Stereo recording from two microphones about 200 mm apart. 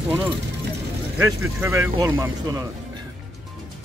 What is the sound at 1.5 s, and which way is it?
Speech, 10° right (ahead or behind).